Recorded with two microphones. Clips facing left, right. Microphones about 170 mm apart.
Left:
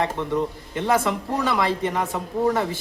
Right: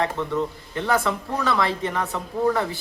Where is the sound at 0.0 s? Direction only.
15° left (ahead or behind).